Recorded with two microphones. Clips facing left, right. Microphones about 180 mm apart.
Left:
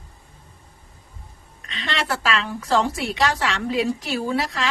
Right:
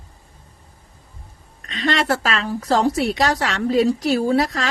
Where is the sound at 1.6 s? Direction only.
45° right (ahead or behind).